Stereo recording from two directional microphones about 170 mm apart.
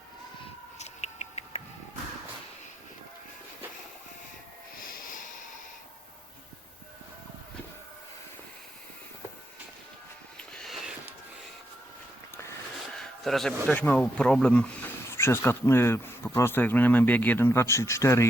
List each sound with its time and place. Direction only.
0.8 s rodents: 40° left (ahead or behind)
4.9 s a sound: 55° left (ahead or behind)
10.3 s music: 5° left (ahead or behind)
13.0 s a man's voice: centre (ahead or behind)